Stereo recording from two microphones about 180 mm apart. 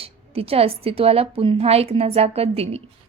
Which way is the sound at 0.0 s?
35° right (ahead or behind).